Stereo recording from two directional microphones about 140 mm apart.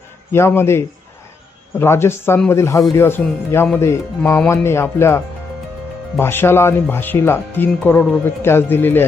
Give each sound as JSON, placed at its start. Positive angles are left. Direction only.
{"t": 0.3, "sound": "speech", "side_deg": 20}